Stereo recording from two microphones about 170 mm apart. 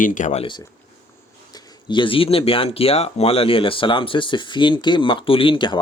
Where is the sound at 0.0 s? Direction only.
50° left (ahead or behind).